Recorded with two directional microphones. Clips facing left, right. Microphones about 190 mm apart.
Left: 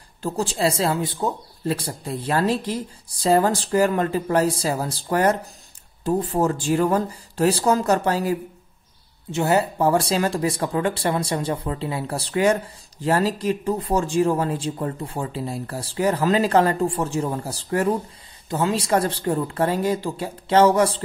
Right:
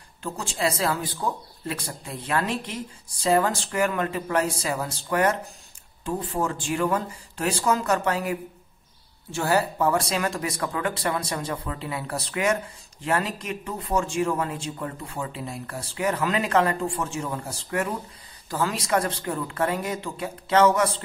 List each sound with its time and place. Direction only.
0.2 s speech: 35° left (ahead or behind)
9.3 s speech: 20° left (ahead or behind)